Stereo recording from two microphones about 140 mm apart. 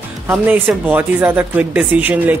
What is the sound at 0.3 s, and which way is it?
Speech, 15° right (ahead or behind).